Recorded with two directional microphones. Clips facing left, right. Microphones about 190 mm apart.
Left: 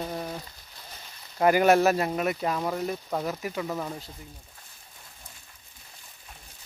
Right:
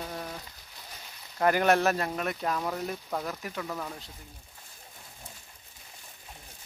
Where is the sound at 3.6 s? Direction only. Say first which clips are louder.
Left 4 dB; 20° left (ahead or behind).